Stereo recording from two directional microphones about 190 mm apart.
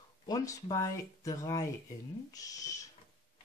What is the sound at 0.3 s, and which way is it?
Speech, 20° left (ahead or behind).